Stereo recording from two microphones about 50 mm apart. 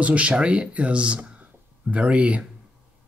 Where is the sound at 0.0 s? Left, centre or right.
Right.